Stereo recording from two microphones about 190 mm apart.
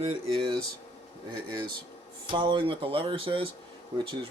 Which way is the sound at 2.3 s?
25° right (ahead or behind).